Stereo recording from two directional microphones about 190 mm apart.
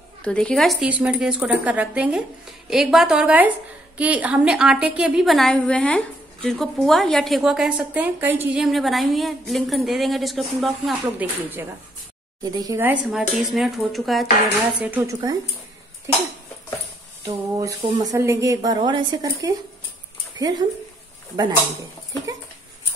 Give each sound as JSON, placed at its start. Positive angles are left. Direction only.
{"t": 0.2, "sound": "a woman's voice", "side_deg": 5}
{"t": 12.4, "sound": "a woman's voice", "side_deg": -20}
{"t": 14.8, "sound": "speech", "side_deg": -10}
{"t": 17.2, "sound": "speech", "side_deg": -20}